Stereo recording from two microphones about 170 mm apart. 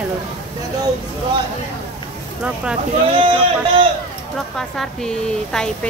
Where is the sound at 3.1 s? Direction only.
35° right (ahead or behind).